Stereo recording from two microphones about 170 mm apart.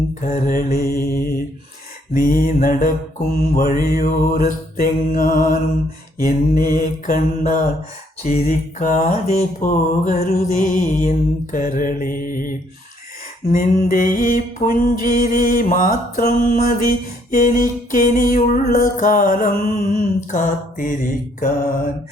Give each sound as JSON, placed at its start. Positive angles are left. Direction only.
{"t": 0.3, "sound": "music", "side_deg": 50}
{"t": 8.2, "sound": "music", "side_deg": 40}